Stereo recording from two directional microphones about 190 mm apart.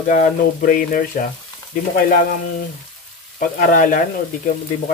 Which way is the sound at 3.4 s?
45° left (ahead or behind).